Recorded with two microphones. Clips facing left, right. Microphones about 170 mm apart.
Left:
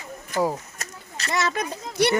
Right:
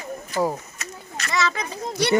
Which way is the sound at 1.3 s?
55° left (ahead or behind).